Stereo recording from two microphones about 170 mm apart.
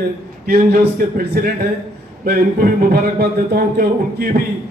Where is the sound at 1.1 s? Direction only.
65° right (ahead or behind).